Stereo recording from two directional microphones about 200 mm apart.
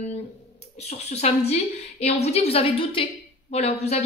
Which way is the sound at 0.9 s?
30° left (ahead or behind).